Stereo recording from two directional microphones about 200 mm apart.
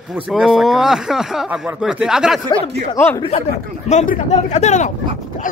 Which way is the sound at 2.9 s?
10° left (ahead or behind).